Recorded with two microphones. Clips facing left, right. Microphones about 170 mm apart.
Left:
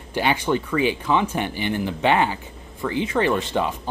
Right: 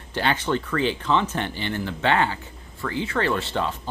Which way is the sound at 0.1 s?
10° left (ahead or behind).